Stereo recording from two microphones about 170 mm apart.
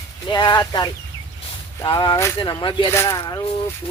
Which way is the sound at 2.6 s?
30° left (ahead or behind).